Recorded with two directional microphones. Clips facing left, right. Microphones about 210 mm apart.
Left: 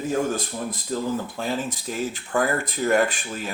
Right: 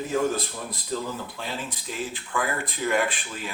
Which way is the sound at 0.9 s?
45° left (ahead or behind).